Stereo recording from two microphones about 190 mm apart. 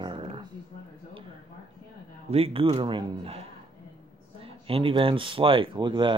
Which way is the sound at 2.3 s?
30° right (ahead or behind).